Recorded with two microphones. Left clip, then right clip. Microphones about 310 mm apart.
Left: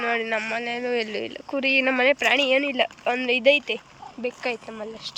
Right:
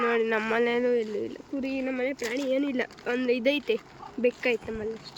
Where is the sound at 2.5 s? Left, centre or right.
Centre.